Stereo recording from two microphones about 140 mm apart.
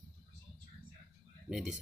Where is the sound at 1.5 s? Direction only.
5° right (ahead or behind).